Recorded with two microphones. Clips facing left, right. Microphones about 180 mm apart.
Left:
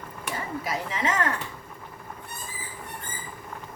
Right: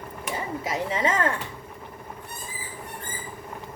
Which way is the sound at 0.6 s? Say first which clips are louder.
Right 4 dB; 25° right (ahead or behind).